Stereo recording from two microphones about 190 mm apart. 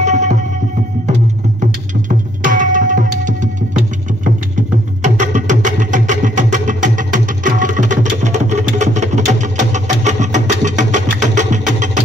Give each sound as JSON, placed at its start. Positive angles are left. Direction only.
{"t": 0.0, "sound": "music", "side_deg": -40}
{"t": 1.6, "sound": "music", "side_deg": -40}